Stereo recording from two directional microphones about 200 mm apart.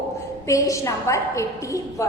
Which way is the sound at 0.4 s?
15° left (ahead or behind).